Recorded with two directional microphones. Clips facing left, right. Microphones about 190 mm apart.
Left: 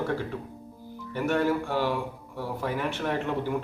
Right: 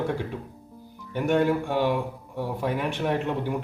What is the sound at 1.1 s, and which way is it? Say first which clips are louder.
Speech: right 3 dB; 15° right (ahead or behind).